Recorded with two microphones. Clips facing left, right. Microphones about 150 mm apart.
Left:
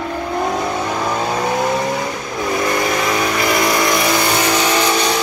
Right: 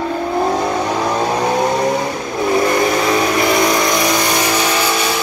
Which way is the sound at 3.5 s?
Centre (ahead or behind).